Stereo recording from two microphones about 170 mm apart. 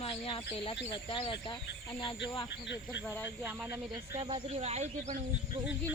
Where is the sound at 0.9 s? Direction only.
30° left (ahead or behind).